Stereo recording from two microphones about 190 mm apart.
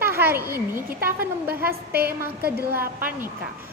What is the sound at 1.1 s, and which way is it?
A woman's voice, 50° right (ahead or behind).